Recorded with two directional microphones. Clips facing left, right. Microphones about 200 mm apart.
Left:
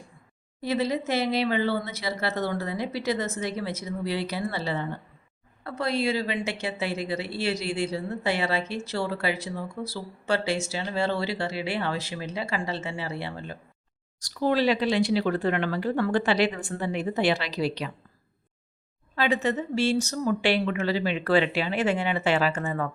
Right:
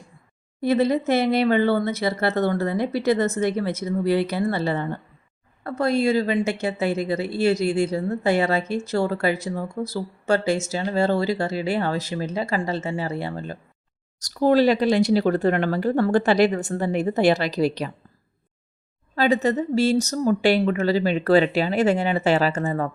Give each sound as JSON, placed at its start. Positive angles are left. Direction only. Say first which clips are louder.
{"t": 0.6, "sound": "a woman's voice", "louder": "right 7 dB", "side_deg": -55}
{"t": 19.1, "sound": "speech", "louder": "right 5 dB", "side_deg": -40}